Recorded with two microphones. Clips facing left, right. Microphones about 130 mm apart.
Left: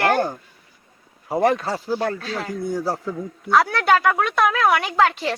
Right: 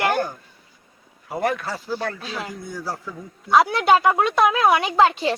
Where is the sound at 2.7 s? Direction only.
25° left (ahead or behind).